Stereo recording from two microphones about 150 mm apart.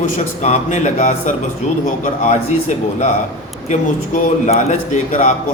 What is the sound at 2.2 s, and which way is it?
Speech, 50° left (ahead or behind).